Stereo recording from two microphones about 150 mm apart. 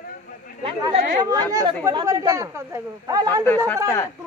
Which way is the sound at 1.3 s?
25° right (ahead or behind).